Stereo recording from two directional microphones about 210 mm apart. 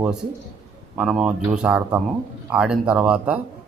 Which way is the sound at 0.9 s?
Centre (ahead or behind).